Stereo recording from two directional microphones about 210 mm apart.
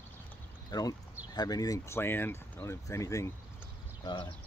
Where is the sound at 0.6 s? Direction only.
20° left (ahead or behind).